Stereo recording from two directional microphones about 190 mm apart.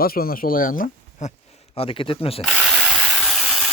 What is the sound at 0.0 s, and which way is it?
Speech, 50° left (ahead or behind).